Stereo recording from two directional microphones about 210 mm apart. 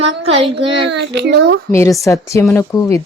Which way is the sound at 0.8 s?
55° right (ahead or behind).